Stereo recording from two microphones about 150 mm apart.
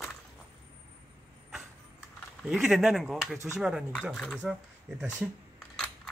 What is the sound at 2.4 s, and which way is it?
Speech, 5° right (ahead or behind).